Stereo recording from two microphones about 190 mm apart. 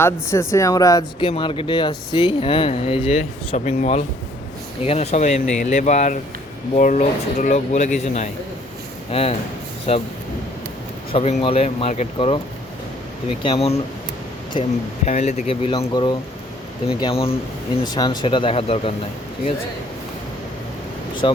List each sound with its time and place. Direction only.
0.0 s speech: 15° left (ahead or behind); by 10.0 s 30° left (ahead or behind)
11.1 s speech: 35° left (ahead or behind)
13.4 s speech: 30° left (ahead or behind)
15.0 s speech: 35° left (ahead or behind)
21.2 s speech: 25° left (ahead or behind)